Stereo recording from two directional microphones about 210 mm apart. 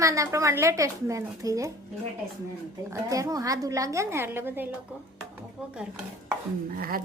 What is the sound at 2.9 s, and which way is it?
A woman's voice, 15° right (ahead or behind).